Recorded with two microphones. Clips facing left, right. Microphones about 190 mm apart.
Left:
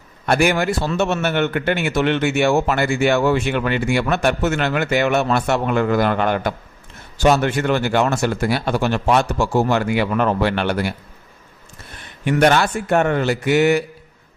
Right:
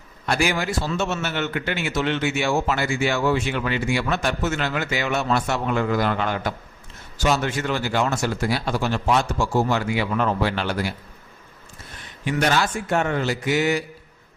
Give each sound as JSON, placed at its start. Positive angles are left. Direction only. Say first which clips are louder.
{"t": 0.3, "sound": "a man's voice", "louder": "left 6 dB", "side_deg": 60}
{"t": 12.2, "sound": "a man's voice", "louder": "left 6 dB", "side_deg": 60}